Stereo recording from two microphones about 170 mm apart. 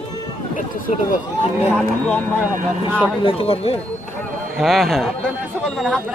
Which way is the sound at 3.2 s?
35° left (ahead or behind).